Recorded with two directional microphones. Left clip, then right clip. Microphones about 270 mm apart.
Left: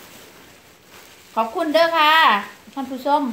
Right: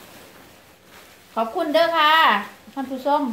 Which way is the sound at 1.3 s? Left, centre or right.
Centre.